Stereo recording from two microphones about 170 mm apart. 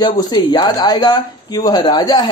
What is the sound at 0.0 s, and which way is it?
Speech, 25° left (ahead or behind).